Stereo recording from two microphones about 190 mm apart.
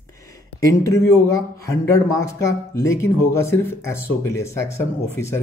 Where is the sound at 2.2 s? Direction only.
15° left (ahead or behind).